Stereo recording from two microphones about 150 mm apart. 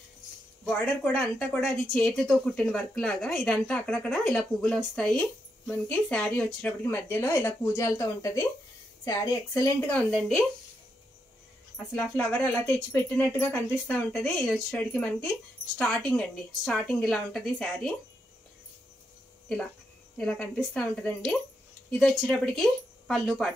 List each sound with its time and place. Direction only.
0.7 s speech: 5° left (ahead or behind); by 9.8 s 20° left (ahead or behind)
9.8 s speech: 5° left (ahead or behind)
11.7 s speech: 10° left (ahead or behind)
20.2 s speech: 5° left (ahead or behind)